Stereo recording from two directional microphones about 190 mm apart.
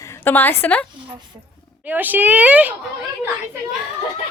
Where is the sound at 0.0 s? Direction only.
10° left (ahead or behind).